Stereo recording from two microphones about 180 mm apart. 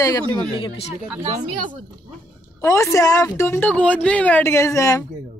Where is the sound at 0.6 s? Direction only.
35° left (ahead or behind).